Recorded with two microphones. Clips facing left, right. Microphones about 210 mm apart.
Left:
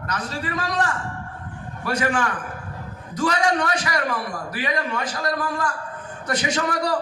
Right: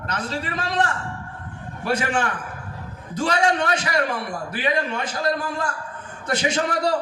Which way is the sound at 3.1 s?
25° right (ahead or behind).